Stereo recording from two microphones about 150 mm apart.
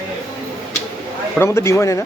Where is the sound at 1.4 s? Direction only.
15° left (ahead or behind).